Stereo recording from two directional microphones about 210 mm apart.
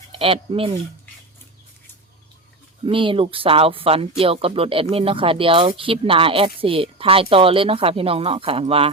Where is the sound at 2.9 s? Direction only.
25° right (ahead or behind).